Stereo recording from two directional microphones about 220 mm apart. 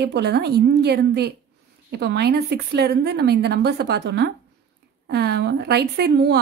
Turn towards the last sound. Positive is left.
turn(degrees=-50)  # may be behind; listen again after turning